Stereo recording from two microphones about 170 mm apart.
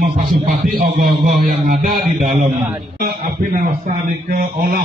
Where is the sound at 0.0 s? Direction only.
55° right (ahead or behind).